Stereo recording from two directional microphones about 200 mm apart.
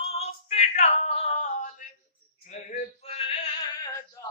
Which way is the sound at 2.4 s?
35° left (ahead or behind).